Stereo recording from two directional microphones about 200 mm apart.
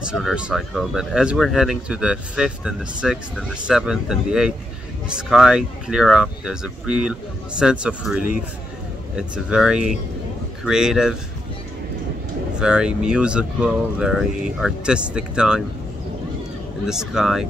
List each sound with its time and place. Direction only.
0.0 s speech: 5° right (ahead or behind)
12.5 s speech: 5° right (ahead or behind)
16.8 s speech: centre (ahead or behind)